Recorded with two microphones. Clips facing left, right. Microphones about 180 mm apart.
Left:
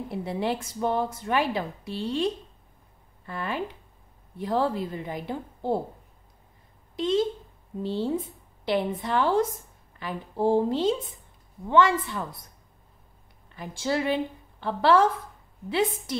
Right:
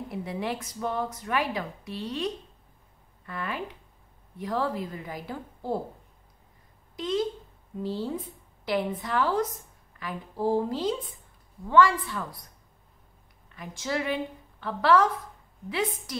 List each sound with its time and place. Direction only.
0.1 s speech: 30° left (ahead or behind)
7.0 s speech: 25° left (ahead or behind)
13.6 s a woman's voice: 30° left (ahead or behind)